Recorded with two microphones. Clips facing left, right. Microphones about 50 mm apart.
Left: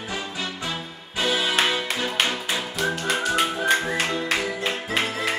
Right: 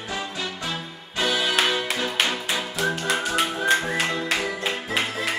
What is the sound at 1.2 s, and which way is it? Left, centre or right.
Music, centre.